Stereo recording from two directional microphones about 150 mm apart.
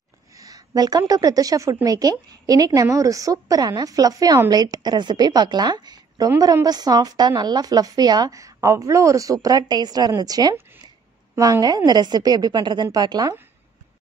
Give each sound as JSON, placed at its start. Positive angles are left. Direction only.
{"t": 0.4, "sound": "a woman's voice", "side_deg": -25}